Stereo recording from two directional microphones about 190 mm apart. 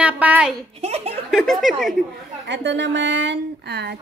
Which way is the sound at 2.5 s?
70° right (ahead or behind).